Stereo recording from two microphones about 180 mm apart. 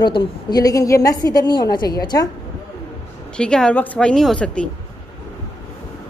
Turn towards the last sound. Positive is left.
turn(degrees=5)  # may be behind; listen again after turning